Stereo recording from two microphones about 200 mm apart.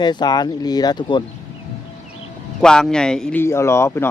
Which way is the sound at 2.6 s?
5° left (ahead or behind).